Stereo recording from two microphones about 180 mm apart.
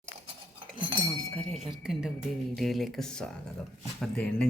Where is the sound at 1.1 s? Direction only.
5° left (ahead or behind).